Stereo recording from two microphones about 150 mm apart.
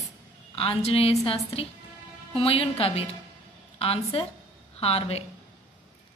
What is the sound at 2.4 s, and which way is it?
A woman's voice, 40° left (ahead or behind).